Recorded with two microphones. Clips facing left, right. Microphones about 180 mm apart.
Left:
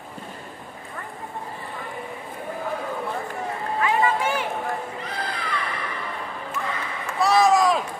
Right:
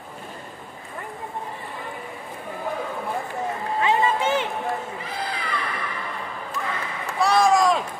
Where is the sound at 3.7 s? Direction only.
25° right (ahead or behind).